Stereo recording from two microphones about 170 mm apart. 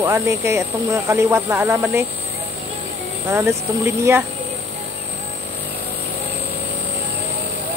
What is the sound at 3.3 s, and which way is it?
Speech, 15° right (ahead or behind).